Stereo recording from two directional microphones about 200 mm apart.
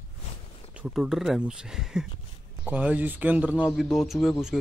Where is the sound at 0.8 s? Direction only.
Centre (ahead or behind).